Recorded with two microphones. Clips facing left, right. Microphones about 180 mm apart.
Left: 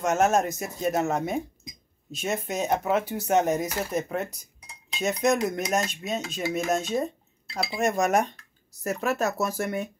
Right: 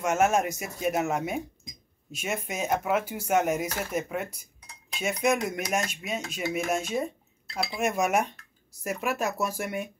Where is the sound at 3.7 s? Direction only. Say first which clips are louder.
Left 3 dB; 10° left (ahead or behind).